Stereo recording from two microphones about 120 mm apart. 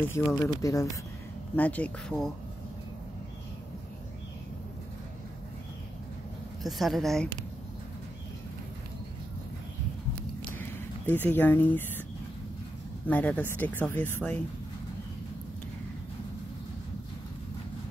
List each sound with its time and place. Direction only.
0.0 s speech: 20° left (ahead or behind)
1.6 s speech: 10° left (ahead or behind)
6.6 s a woman's voice: centre (ahead or behind)
10.6 s a sound: 15° left (ahead or behind)
13.0 s speech: 10° left (ahead or behind)